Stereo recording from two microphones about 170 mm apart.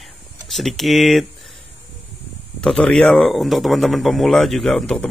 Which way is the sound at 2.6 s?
5° left (ahead or behind).